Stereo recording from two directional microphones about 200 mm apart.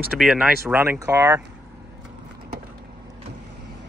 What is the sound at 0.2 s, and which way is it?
Speech, 5° right (ahead or behind).